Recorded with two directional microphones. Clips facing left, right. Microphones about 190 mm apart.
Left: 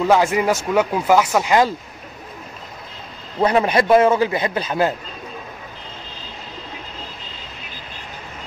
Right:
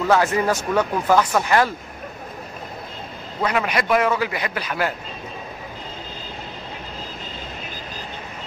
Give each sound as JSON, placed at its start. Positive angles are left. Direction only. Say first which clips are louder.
{"t": 0.1, "sound": "speech", "louder": "left 1 dB", "side_deg": 15}
{"t": 3.3, "sound": "a man's voice", "louder": "left 6 dB", "side_deg": 30}